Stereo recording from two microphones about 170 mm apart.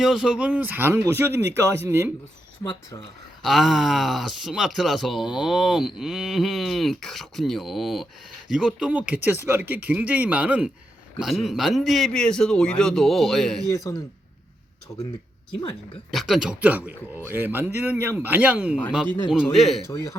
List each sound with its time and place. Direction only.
0.0 s speech: 5° right (ahead or behind)
3.4 s speech: centre (ahead or behind)
13.7 s speech: 20° left (ahead or behind)
16.1 s speech: centre (ahead or behind)